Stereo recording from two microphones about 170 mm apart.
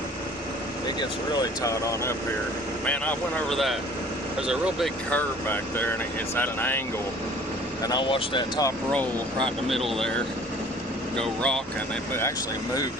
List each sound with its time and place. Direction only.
1.4 s speech: 20° left (ahead or behind); by 4.9 s 5° right (ahead or behind)
5.1 s speech: 10° left (ahead or behind)
7.9 s speech: 25° left (ahead or behind)
9.6 s speech: centre (ahead or behind)
11.2 s speech: 5° left (ahead or behind)